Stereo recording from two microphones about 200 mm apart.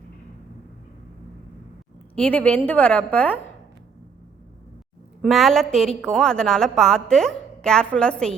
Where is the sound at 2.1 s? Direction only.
5° left (ahead or behind).